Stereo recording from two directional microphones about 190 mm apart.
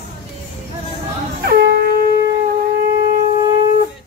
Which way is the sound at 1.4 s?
55° right (ahead or behind).